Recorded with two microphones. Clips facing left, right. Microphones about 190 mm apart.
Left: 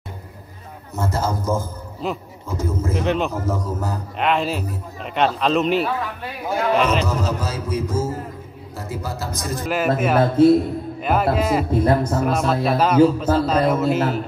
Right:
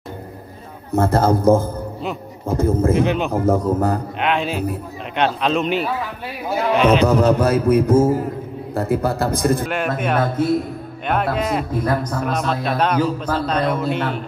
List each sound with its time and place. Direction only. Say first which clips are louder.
0.9 s a man's voice: right 8 dB; 55° right (ahead or behind)
3.0 s a man's voice: right 2 dB; centre (ahead or behind)
3.3 s a man's voice: right 7 dB; 55° right (ahead or behind)
4.2 s a man's voice: left 2 dB; centre (ahead or behind)
7.1 s a man's voice: right 9 dB; 60° right (ahead or behind)
9.7 s a man's voice: left 2 dB; 5° left (ahead or behind)
11.8 s speech: left 3 dB; 25° left (ahead or behind)
12.2 s a man's voice: left 2 dB; 5° left (ahead or behind)